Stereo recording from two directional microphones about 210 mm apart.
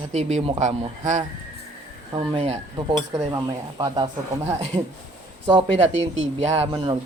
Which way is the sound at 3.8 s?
20° right (ahead or behind).